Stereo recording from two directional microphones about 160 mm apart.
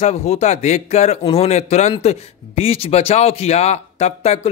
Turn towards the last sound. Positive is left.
turn(degrees=40)  # may be behind; listen again after turning